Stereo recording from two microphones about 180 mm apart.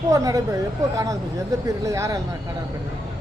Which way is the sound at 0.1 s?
20° right (ahead or behind).